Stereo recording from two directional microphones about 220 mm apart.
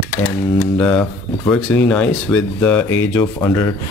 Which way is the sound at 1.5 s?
5° left (ahead or behind).